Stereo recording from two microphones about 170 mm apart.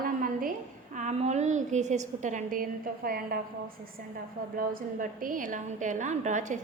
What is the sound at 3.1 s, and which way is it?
Speech, 60° right (ahead or behind).